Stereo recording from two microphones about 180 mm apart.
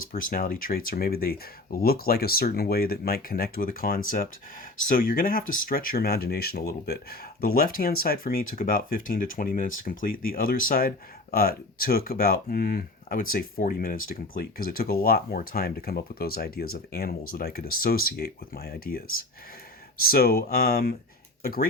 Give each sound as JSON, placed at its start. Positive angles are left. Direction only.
{"t": 0.1, "sound": "speech", "side_deg": 50}